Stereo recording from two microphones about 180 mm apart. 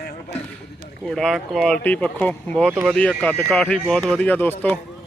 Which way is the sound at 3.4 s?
5° left (ahead or behind).